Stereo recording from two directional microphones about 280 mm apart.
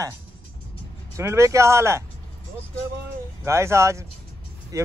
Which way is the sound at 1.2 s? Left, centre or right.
Centre.